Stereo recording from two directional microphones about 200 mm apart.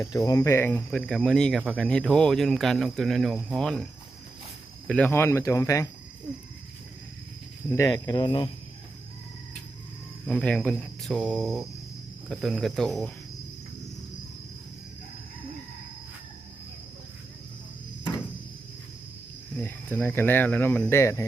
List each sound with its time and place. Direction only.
0.0 s speech: 15° left (ahead or behind)
4.9 s speech: 5° left (ahead or behind)
7.8 s speech: 20° left (ahead or behind)
10.2 s speech: 5° left (ahead or behind)
19.6 s speech: 10° left (ahead or behind)